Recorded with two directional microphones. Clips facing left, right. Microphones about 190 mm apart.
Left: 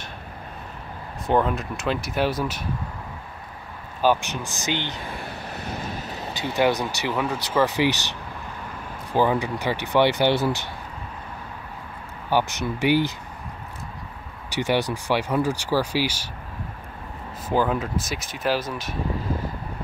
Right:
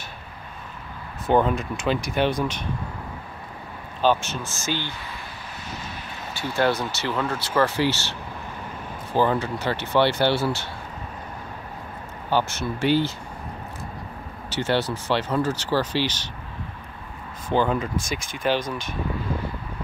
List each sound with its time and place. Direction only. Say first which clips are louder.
1.2 s speech: right 2 dB; centre (ahead or behind)
4.0 s speech: even; 15° left (ahead or behind)
5.0 s vehicle: left 4 dB; 55° left (ahead or behind)
6.3 s speech: left 1 dB; 20° left (ahead or behind)
12.3 s speech: left 1 dB; 15° left (ahead or behind)
14.5 s speech: left 1 dB; 15° left (ahead or behind)
17.5 s speech: even; 5° left (ahead or behind)